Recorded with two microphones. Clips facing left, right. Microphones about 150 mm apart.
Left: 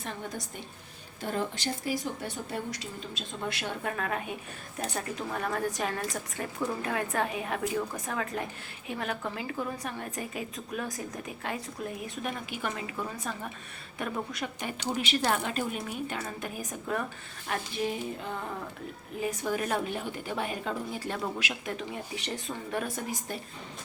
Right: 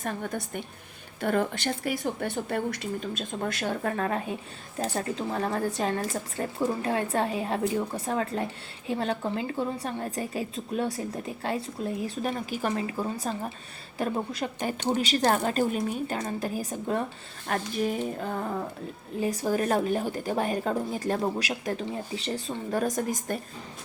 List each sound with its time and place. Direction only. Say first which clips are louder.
0.0 s a woman's voice: right 5 dB; 60° right (ahead or behind); by 17.0 s 30° right (ahead or behind)
17.4 s a woman's voice: right 4 dB; 45° right (ahead or behind)